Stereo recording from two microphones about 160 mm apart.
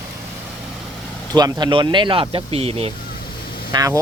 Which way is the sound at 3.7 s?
20° right (ahead or behind).